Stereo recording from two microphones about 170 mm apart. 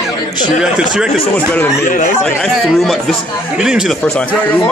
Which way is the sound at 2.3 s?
Centre (ahead or behind).